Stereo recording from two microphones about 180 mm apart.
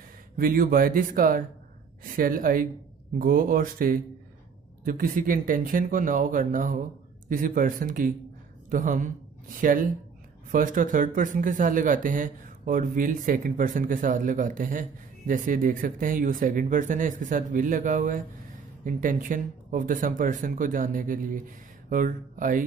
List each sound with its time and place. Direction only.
0.4 s a woman's voice: 50° right (ahead or behind)